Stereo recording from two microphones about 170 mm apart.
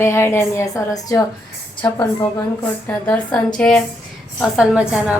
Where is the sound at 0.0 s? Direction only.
15° left (ahead or behind).